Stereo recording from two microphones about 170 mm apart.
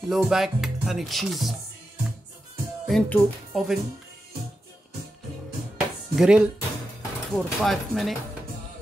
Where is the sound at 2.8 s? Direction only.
5° left (ahead or behind).